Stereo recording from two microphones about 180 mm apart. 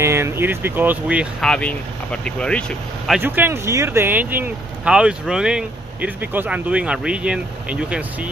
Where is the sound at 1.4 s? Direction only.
5° left (ahead or behind).